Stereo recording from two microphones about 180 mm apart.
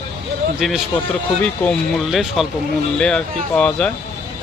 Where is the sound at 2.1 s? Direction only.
Centre (ahead or behind).